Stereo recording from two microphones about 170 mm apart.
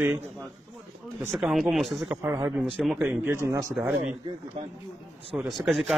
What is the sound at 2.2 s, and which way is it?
Speech, 20° right (ahead or behind).